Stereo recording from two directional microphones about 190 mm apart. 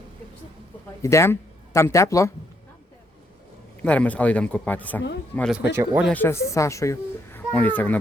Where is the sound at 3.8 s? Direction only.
5° left (ahead or behind).